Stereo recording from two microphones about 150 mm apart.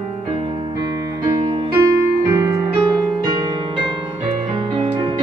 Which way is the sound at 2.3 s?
25° right (ahead or behind).